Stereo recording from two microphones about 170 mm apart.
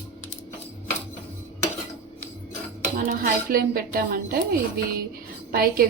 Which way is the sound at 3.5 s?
55° right (ahead or behind).